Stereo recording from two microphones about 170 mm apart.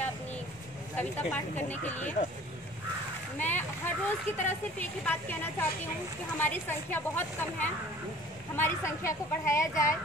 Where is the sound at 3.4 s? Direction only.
10° left (ahead or behind).